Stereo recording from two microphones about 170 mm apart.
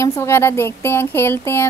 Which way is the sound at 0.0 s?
15° left (ahead or behind).